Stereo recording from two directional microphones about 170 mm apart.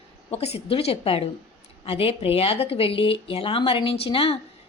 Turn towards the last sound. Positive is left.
turn(degrees=35)  # may be behind; listen again after turning